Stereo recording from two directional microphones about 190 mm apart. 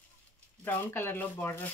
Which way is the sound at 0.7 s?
10° left (ahead or behind).